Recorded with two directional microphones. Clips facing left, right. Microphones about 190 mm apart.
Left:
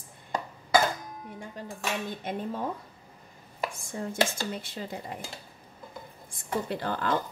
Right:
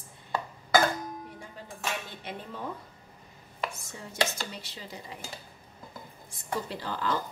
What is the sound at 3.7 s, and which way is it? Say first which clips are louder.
Dishes: left 5 dB; 50° left (ahead or behind).